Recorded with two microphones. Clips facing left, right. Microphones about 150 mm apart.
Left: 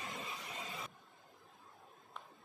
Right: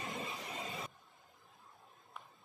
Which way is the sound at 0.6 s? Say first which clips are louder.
Right 3 dB; 20° right (ahead or behind).